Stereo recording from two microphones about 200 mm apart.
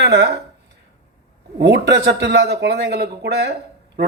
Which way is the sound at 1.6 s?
55° right (ahead or behind).